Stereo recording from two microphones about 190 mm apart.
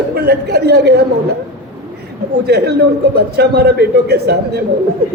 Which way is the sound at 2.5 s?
60° right (ahead or behind).